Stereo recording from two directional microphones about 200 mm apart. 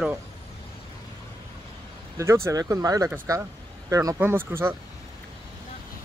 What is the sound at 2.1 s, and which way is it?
Speech, 15° right (ahead or behind).